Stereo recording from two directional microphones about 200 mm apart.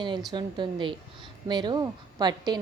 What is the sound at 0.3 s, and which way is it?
A woman's voice, 20° right (ahead or behind).